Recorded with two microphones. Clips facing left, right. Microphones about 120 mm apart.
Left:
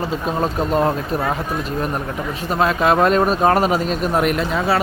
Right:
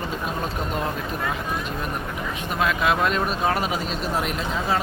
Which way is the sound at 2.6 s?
40° left (ahead or behind).